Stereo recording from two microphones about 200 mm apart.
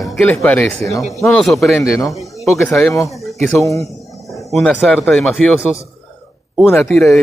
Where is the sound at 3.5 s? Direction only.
15° left (ahead or behind).